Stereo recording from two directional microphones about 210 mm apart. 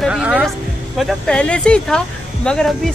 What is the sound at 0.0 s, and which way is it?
Music, 5° right (ahead or behind).